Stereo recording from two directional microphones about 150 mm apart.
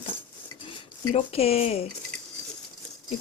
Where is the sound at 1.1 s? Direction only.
45° left (ahead or behind).